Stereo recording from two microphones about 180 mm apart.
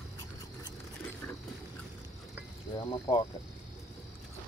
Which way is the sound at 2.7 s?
25° left (ahead or behind).